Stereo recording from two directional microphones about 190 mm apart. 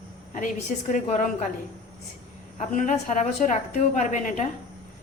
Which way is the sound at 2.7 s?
40° left (ahead or behind).